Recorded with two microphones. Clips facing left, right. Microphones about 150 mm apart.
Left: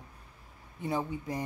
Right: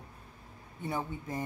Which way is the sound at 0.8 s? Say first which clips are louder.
Left 3 dB; 15° left (ahead or behind).